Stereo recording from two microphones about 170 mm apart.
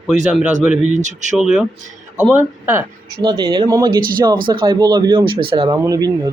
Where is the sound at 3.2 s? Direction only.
25° right (ahead or behind).